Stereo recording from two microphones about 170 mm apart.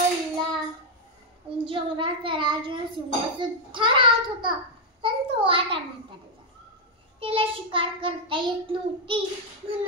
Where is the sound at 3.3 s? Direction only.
30° right (ahead or behind).